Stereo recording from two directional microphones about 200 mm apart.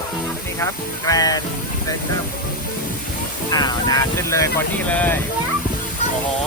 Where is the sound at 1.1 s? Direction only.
20° left (ahead or behind).